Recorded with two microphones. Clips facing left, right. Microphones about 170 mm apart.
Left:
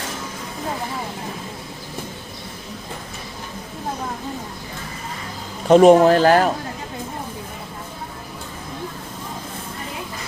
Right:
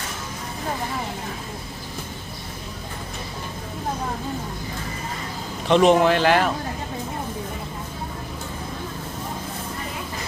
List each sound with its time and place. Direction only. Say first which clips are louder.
5.6 s speech: left 6 dB; 45° left (ahead or behind)